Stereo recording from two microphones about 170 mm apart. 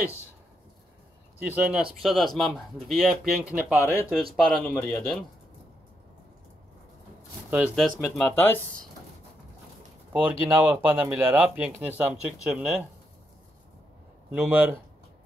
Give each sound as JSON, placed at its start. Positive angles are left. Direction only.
{"t": 1.4, "sound": "speech", "side_deg": -5}
{"t": 3.7, "sound": "speech", "side_deg": 15}
{"t": 4.4, "sound": "speech", "side_deg": 0}
{"t": 7.5, "sound": "speech", "side_deg": -5}
{"t": 8.2, "sound": "speech", "side_deg": 10}
{"t": 10.1, "sound": "speech", "side_deg": -10}
{"t": 14.3, "sound": "speech", "side_deg": -5}